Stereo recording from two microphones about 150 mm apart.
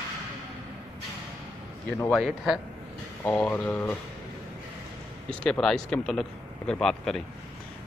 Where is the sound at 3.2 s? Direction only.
10° left (ahead or behind).